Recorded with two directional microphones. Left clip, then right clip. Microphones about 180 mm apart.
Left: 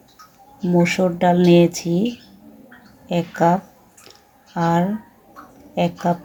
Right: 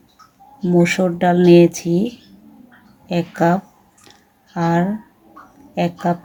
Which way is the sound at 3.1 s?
10° right (ahead or behind).